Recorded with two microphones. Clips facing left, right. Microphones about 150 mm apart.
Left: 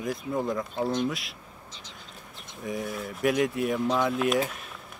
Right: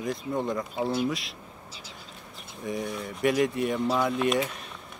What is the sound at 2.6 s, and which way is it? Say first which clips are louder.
Speech: even; centre (ahead or behind).